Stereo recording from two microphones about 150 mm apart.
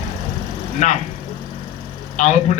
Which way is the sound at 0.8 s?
50° left (ahead or behind).